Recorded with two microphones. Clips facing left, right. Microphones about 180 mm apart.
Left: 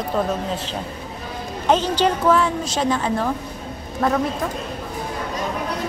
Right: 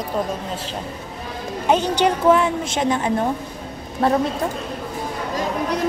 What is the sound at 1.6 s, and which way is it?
A woman's voice, 15° right (ahead or behind).